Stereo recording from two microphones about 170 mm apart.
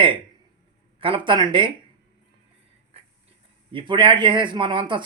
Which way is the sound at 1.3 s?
25° right (ahead or behind).